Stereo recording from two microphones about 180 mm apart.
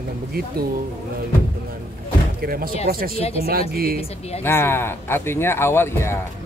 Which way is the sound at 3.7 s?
55° right (ahead or behind).